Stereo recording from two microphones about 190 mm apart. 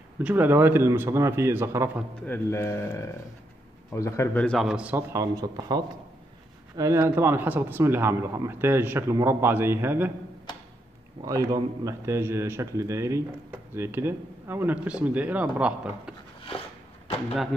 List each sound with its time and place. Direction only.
0.2 s a man's voice: 10° right (ahead or behind)
2.2 s a man's voice: 10° left (ahead or behind); by 10.1 s 10° right (ahead or behind)
11.2 s a man's voice: 20° right (ahead or behind)